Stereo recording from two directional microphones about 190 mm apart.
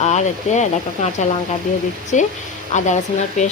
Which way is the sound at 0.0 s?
35° left (ahead or behind).